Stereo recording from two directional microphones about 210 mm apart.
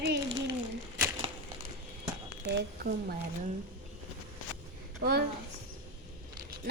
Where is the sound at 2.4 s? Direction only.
55° right (ahead or behind).